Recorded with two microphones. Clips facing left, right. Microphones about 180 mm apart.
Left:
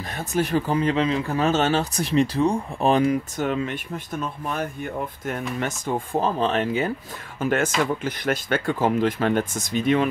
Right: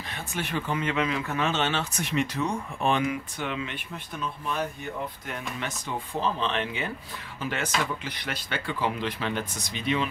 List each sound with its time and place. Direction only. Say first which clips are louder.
0.1 s speech: left 9 dB; 40° left (ahead or behind)